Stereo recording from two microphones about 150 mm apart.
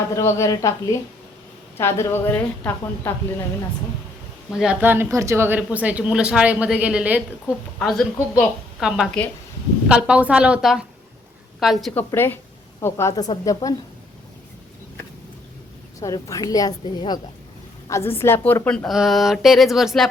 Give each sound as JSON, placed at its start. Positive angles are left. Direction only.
{"t": 0.1, "sound": "a woman's voice", "side_deg": 20}
{"t": 4.5, "sound": "speech", "side_deg": -5}
{"t": 7.8, "sound": "a woman's voice", "side_deg": 5}
{"t": 11.9, "sound": "a woman's voice", "side_deg": 15}
{"t": 16.0, "sound": "a woman's voice", "side_deg": 20}
{"t": 17.8, "sound": "a woman's voice", "side_deg": 20}
{"t": 18.9, "sound": "a woman's voice", "side_deg": 0}